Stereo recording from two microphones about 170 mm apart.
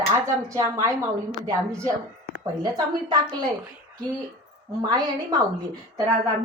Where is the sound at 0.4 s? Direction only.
20° right (ahead or behind).